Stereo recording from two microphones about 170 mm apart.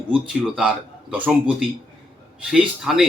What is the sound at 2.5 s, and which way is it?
Speech, 5° right (ahead or behind).